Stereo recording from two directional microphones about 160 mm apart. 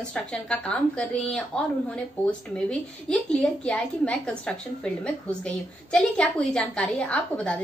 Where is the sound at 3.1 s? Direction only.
5° left (ahead or behind).